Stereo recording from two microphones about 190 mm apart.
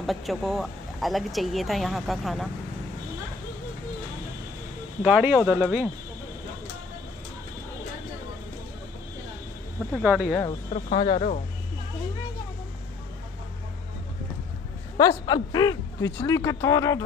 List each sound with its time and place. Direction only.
0.0 s speech: centre (ahead or behind)
5.0 s speech: 5° right (ahead or behind)
9.9 s speech: 5° right (ahead or behind)
11.0 s speech: 25° left (ahead or behind)
15.0 s speech: 20° left (ahead or behind)